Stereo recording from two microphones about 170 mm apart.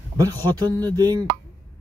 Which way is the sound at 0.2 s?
25° right (ahead or behind).